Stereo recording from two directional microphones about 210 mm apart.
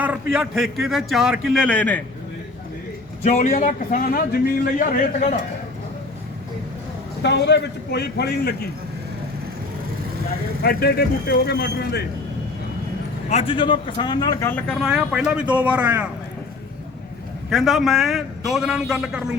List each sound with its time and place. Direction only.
0.0 s a man's voice: 5° right (ahead or behind)
3.2 s a man's voice: 35° left (ahead or behind)
7.2 s speech: 55° left (ahead or behind)
10.6 s speech: 45° left (ahead or behind)
13.2 s speech: 30° left (ahead or behind)
14.5 s speech: centre (ahead or behind)
17.5 s a man's voice: centre (ahead or behind)